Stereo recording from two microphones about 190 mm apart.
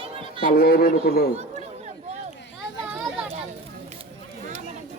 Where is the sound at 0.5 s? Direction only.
50° left (ahead or behind).